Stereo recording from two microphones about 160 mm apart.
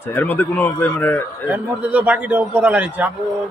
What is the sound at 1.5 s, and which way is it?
A man's voice, 10° right (ahead or behind).